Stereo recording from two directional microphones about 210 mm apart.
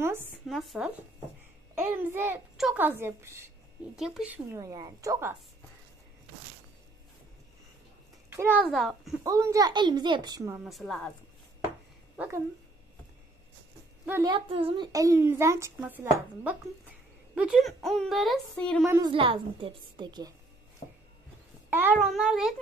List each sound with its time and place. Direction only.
0.0 s a child's voice: 10° right (ahead or behind)
0.3 s a child's voice: centre (ahead or behind)
3.9 s a child's voice: centre (ahead or behind)
8.3 s a child's voice: 10° right (ahead or behind)
8.6 s speech: centre (ahead or behind)
9.2 s a woman's voice: 15° right (ahead or behind)
10.6 s speech: centre (ahead or behind)
14.0 s a child's voice: 15° right (ahead or behind); by 18.9 s 5° left (ahead or behind)
18.9 s a woman's voice: 20° right (ahead or behind)
21.6 s a sound: 10° right (ahead or behind)
21.9 s speech: centre (ahead or behind)